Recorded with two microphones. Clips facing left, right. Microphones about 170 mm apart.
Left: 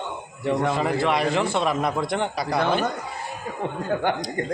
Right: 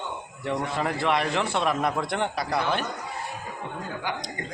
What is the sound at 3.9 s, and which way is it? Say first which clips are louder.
Speech: left 10 dB; 55° left (ahead or behind).